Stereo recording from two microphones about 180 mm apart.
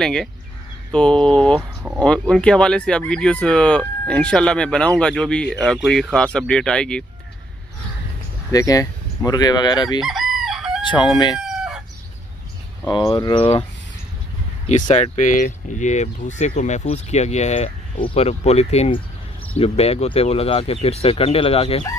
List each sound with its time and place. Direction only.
0.0 s speech: 5° left (ahead or behind)
8.5 s fowl: 20° left (ahead or behind)
10.0 s chicken: centre (ahead or behind)
10.8 s speech: 25° left (ahead or behind)
11.3 s chicken: 5° right (ahead or behind)
13.1 s speech: 25° left (ahead or behind)
14.7 s speech: 40° left (ahead or behind)